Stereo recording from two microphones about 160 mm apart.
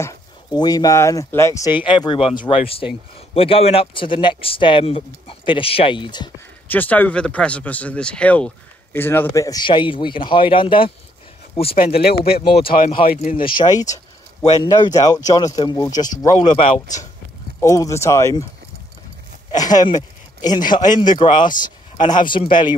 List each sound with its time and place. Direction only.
0.0 s speech: 25° left (ahead or behind)
6.7 s speech: 10° left (ahead or behind); by 10.9 s 30° left (ahead or behind)
11.7 s speech: 75° left (ahead or behind)
12.4 s speech: 35° left (ahead or behind)
12.7 s speech: 60° left (ahead or behind)
13.3 s speech: 30° left (ahead or behind)
16.4 s speech: 40° left (ahead or behind)
17.6 s speech: 20° left (ahead or behind)
19.5 s speech: 25° left (ahead or behind)